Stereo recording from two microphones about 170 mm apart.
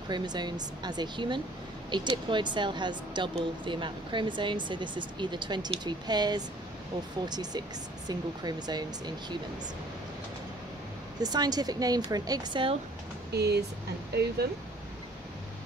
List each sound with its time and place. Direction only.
0.1 s speech: 25° right (ahead or behind)
11.1 s speech: 25° right (ahead or behind)
13.3 s speech: 75° right (ahead or behind)